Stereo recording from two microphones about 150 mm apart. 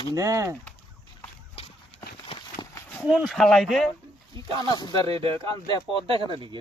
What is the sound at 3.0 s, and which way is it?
Speech, 5° right (ahead or behind).